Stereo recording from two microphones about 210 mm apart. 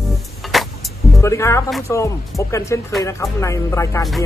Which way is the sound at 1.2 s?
15° left (ahead or behind).